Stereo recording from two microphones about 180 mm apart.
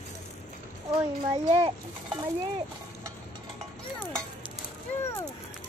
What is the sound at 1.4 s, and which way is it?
Speech, 35° right (ahead or behind).